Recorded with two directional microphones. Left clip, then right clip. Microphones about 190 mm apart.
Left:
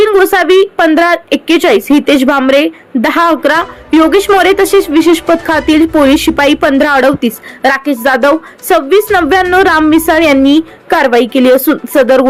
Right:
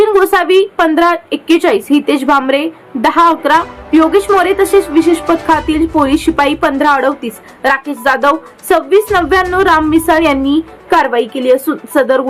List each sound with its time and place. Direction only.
0.0 s a woman's voice: 20° left (ahead or behind)